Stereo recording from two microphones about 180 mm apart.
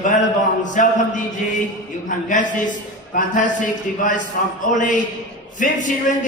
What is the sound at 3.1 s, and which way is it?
A man's voice, 45° left (ahead or behind).